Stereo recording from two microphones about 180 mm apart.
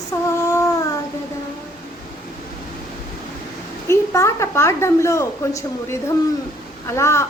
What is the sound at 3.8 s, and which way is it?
A woman's voice, 15° left (ahead or behind).